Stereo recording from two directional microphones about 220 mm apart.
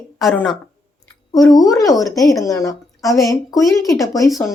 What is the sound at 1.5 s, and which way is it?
A woman's voice, 15° left (ahead or behind).